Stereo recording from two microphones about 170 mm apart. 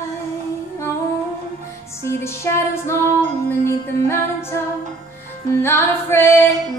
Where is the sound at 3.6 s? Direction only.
15° left (ahead or behind).